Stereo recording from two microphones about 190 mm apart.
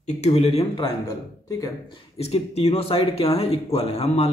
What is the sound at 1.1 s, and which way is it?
Speech, 15° left (ahead or behind).